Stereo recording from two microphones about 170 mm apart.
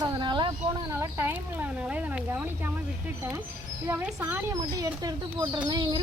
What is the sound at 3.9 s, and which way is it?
Speech, 10° right (ahead or behind).